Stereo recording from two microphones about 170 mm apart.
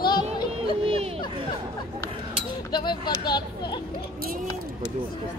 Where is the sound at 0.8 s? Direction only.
35° right (ahead or behind).